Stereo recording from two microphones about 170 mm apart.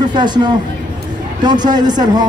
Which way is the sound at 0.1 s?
25° right (ahead or behind).